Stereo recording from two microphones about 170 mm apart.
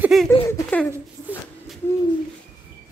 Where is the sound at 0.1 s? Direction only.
Centre (ahead or behind).